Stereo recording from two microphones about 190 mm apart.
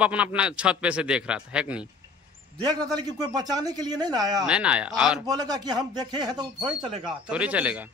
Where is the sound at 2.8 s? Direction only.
20° right (ahead or behind).